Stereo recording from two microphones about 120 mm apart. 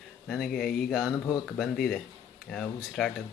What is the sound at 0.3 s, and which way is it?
Speech, centre (ahead or behind).